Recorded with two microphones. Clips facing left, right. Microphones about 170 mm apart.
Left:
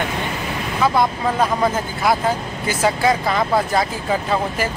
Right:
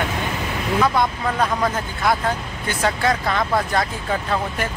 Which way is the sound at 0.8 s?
5° left (ahead or behind).